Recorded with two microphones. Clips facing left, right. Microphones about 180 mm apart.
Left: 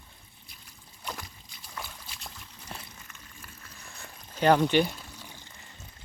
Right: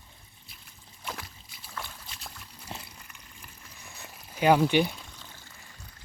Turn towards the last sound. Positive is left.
turn(degrees=15)  # may be behind; listen again after turning